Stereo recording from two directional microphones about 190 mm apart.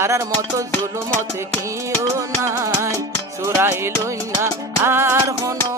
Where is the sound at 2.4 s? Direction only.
15° right (ahead or behind).